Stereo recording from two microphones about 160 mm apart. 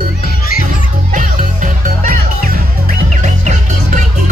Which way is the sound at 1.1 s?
55° right (ahead or behind).